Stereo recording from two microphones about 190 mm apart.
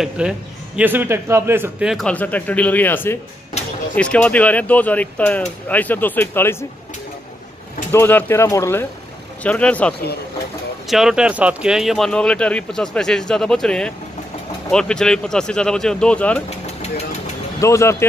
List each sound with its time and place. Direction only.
0.2 s speech: 5° right (ahead or behind); by 6.5 s 10° left (ahead or behind)
7.9 s speech: 10° left (ahead or behind)
16.4 s sewing machine: 35° left (ahead or behind)
17.6 s speech: 15° left (ahead or behind)